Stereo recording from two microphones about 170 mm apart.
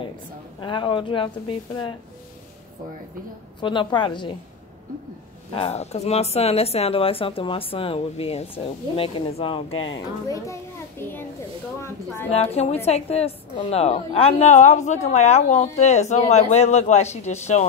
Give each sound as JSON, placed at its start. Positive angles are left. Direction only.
{"t": 0.6, "sound": "speech", "side_deg": 25}
{"t": 3.6, "sound": "speech", "side_deg": 30}
{"t": 5.5, "sound": "a woman's voice", "side_deg": 35}
{"t": 10.2, "sound": "speech", "side_deg": 20}
{"t": 12.5, "sound": "a woman's voice", "side_deg": 40}